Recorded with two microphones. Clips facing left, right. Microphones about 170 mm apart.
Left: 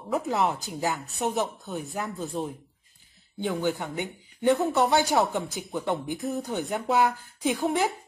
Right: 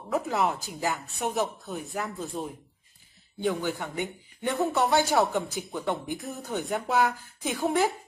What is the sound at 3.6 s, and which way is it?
Speech, 20° left (ahead or behind).